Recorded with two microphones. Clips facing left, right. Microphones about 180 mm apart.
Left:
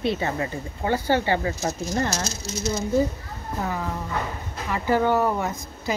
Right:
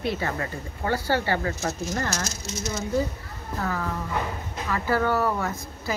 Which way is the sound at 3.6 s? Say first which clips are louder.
Even; 15° left (ahead or behind).